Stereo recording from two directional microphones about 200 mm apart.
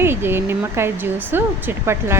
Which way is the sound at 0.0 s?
10° right (ahead or behind).